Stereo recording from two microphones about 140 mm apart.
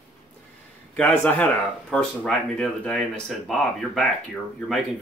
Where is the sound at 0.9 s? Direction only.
10° left (ahead or behind).